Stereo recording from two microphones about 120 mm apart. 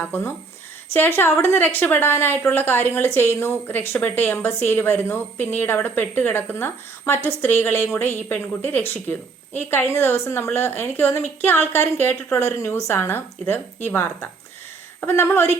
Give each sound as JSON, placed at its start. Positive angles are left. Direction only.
{"t": 0.0, "sound": "a woman's voice", "side_deg": 15}